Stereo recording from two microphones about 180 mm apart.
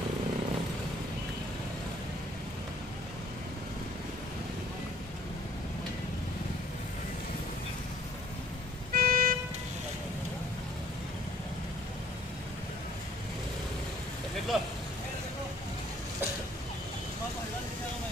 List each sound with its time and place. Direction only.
8.9 s vehicle: 55° right (ahead or behind)
14.5 s vehicle: centre (ahead or behind)